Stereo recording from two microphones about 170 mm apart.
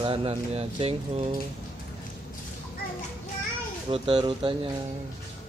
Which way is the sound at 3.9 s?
30° right (ahead or behind).